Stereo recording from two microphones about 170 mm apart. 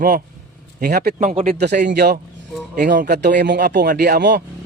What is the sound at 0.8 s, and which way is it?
Speech, 65° right (ahead or behind).